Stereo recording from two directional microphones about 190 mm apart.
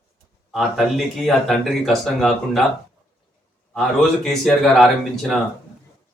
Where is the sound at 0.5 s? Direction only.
Centre (ahead or behind).